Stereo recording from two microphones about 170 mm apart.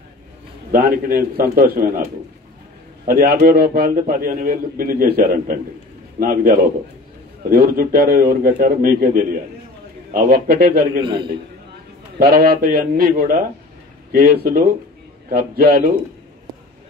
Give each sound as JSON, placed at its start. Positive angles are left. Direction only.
{"t": 0.7, "sound": "a man's voice", "side_deg": -60}
{"t": 3.1, "sound": "a man's voice", "side_deg": -60}
{"t": 12.2, "sound": "a man's voice", "side_deg": -65}